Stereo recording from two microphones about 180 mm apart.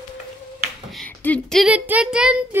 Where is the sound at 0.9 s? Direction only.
5° left (ahead or behind).